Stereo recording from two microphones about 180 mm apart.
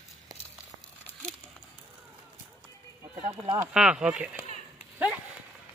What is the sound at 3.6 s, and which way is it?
Speech, 5° right (ahead or behind).